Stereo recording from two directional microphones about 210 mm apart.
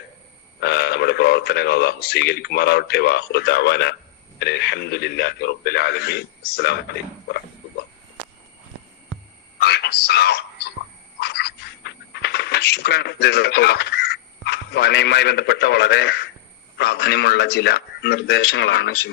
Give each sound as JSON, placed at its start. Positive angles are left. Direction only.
{"t": 0.6, "sound": "speech", "side_deg": 50}
{"t": 9.6, "sound": "a sound", "side_deg": 50}
{"t": 11.2, "sound": "coin", "side_deg": 50}
{"t": 16.7, "sound": "speech", "side_deg": 50}